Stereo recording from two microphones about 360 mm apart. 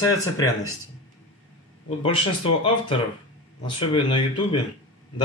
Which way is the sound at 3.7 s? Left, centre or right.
Centre.